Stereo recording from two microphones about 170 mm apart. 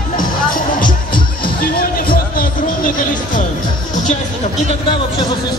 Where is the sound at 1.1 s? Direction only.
30° left (ahead or behind).